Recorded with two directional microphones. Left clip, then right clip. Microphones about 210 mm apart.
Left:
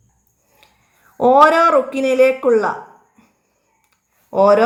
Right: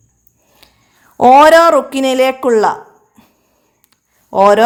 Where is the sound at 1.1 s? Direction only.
50° right (ahead or behind).